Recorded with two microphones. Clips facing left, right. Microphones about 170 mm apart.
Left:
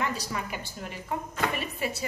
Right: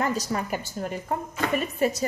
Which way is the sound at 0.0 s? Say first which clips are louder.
Right 5 dB; 40° right (ahead or behind).